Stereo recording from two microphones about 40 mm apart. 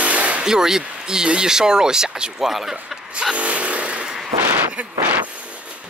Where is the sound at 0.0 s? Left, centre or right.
Right.